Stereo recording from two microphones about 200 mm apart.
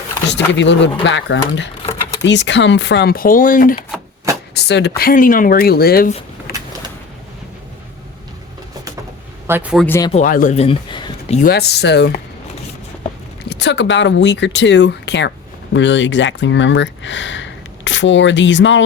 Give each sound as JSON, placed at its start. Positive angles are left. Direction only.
{"t": 0.3, "sound": "speech", "side_deg": 60}
{"t": 4.5, "sound": "speech", "side_deg": 55}
{"t": 6.5, "sound": "a sound", "side_deg": 45}
{"t": 9.5, "sound": "a man's voice", "side_deg": -5}
{"t": 9.8, "sound": "speech", "side_deg": 10}
{"t": 10.1, "sound": "speech", "side_deg": 40}
{"t": 11.3, "sound": "speech", "side_deg": 50}
{"t": 13.5, "sound": "speech", "side_deg": 60}